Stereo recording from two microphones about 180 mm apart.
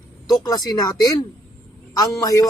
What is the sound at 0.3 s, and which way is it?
A man's voice, 20° left (ahead or behind).